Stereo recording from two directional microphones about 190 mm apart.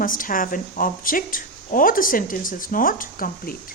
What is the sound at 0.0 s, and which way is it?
Speech, 45° left (ahead or behind).